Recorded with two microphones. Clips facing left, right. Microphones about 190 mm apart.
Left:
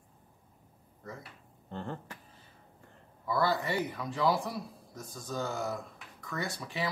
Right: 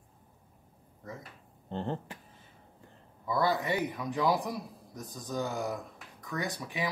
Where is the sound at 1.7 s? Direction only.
25° right (ahead or behind).